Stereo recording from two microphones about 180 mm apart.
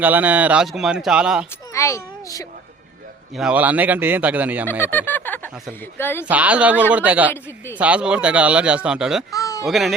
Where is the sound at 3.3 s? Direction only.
5° right (ahead or behind).